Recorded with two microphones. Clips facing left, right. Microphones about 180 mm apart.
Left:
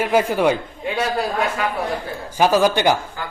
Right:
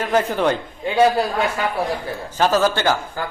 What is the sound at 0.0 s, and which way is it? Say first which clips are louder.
Speech: left 2 dB; 10° left (ahead or behind).